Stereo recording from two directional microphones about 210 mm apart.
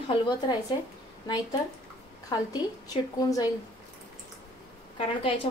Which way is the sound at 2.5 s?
15° left (ahead or behind).